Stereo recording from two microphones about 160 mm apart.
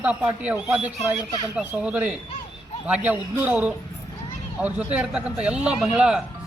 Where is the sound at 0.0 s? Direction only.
10° right (ahead or behind).